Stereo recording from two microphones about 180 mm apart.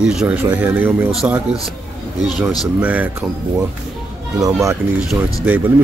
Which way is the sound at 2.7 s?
10° right (ahead or behind).